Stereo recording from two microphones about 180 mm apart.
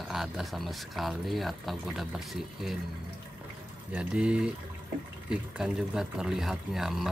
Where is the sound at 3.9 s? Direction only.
5° right (ahead or behind).